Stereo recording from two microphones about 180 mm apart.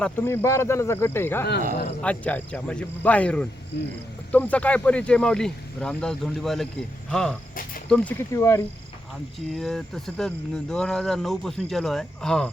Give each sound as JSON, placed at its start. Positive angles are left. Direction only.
{"t": 0.0, "sound": "speech", "side_deg": 10}
{"t": 8.3, "sound": "speech", "side_deg": 15}
{"t": 9.5, "sound": "speech", "side_deg": 0}